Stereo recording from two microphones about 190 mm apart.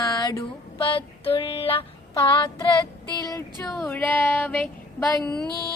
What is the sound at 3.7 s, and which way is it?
Speech, 10° left (ahead or behind).